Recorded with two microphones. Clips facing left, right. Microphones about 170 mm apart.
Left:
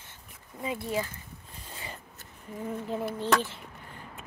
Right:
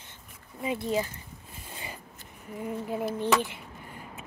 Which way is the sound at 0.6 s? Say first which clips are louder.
Right 3 dB; 20° right (ahead or behind).